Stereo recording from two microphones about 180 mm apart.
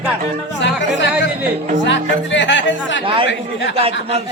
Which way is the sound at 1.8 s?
90° left.